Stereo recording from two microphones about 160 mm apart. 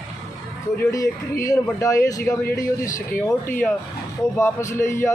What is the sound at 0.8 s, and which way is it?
A man's voice, 20° left (ahead or behind).